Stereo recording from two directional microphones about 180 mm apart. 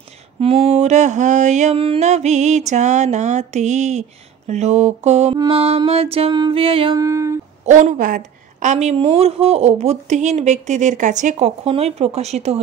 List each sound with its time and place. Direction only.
0.4 s a woman's voice: 35° right (ahead or behind)
7.0 s speech: 15° right (ahead or behind)
7.6 s a woman's voice: 45° right (ahead or behind)